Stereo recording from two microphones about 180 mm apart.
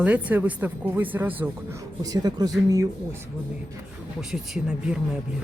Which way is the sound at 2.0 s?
20° right (ahead or behind).